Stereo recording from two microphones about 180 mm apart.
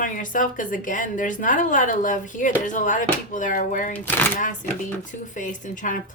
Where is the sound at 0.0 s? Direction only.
50° left (ahead or behind).